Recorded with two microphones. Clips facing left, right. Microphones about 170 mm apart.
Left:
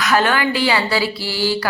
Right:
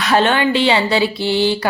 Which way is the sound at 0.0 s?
25° right (ahead or behind).